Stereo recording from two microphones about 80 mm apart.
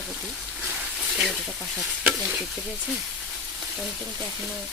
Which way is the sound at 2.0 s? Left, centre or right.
Centre.